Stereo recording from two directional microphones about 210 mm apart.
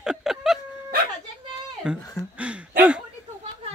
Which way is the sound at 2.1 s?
5° right (ahead or behind).